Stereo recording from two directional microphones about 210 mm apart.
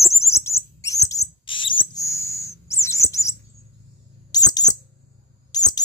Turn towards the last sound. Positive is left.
turn(degrees=20)  # may be behind; listen again after turning